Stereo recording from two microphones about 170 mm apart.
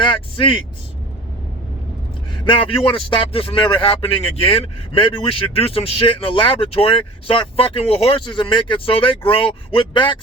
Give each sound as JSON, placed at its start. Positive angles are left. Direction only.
{"t": 0.0, "sound": "speech", "side_deg": 30}
{"t": 2.4, "sound": "a man's voice", "side_deg": 30}